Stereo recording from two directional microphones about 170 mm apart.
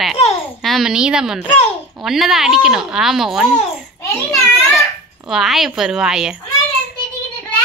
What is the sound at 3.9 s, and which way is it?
Speech, 20° left (ahead or behind).